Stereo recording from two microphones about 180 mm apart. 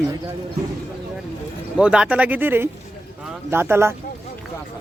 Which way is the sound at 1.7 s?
5° right (ahead or behind).